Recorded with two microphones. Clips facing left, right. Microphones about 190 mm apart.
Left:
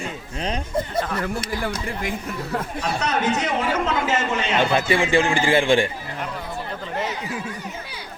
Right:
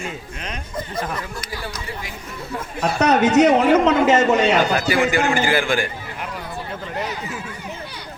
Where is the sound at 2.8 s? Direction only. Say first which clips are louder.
Right 9 dB; 70° right (ahead or behind).